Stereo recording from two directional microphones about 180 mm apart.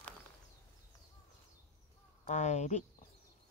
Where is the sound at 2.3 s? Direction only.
40° left (ahead or behind).